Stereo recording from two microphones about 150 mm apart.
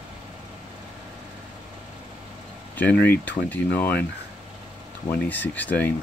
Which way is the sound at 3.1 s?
10° left (ahead or behind).